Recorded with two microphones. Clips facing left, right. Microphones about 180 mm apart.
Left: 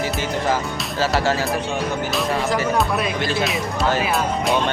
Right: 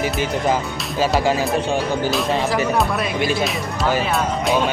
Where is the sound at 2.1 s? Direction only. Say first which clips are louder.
Right 1 dB; centre (ahead or behind).